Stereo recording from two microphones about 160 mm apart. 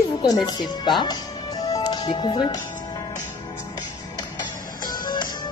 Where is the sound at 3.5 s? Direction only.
20° left (ahead or behind).